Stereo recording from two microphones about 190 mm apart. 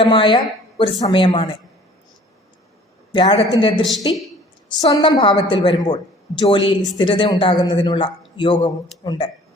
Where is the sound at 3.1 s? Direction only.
25° left (ahead or behind).